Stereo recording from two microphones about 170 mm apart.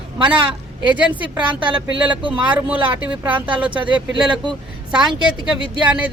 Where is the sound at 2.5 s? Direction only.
10° right (ahead or behind).